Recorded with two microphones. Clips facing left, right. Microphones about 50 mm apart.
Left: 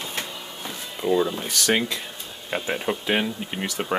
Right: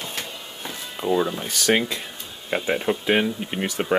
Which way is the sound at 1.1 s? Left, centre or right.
Centre.